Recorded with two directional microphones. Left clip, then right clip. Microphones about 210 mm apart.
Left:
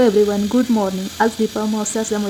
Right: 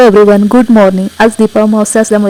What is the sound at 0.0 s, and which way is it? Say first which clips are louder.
Speech: right 11 dB; 45° right (ahead or behind).